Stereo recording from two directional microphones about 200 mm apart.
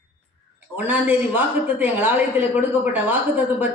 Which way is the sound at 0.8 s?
10° right (ahead or behind).